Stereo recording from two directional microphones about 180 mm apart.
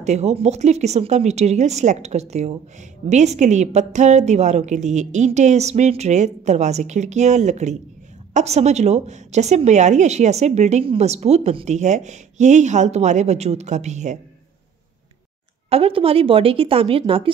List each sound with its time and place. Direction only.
0.0 s speech: 40° right (ahead or behind)
15.7 s speech: 30° right (ahead or behind)